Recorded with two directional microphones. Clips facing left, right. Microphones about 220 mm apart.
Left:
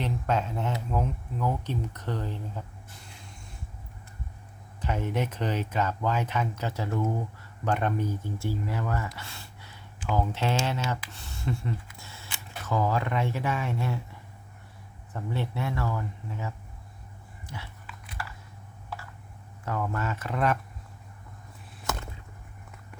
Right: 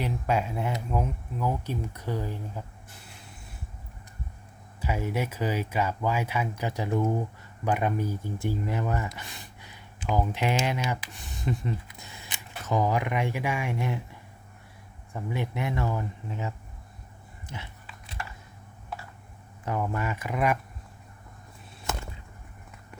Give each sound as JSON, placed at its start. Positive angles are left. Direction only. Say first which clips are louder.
{"t": 0.0, "sound": "speech", "louder": "right 1 dB", "side_deg": -10}
{"t": 4.8, "sound": "speech", "louder": "even", "side_deg": -10}
{"t": 15.1, "sound": "speech", "louder": "right 1 dB", "side_deg": -15}
{"t": 17.5, "sound": "dog", "louder": "right 1 dB", "side_deg": -25}
{"t": 19.6, "sound": "speech", "louder": "right 1 dB", "side_deg": -15}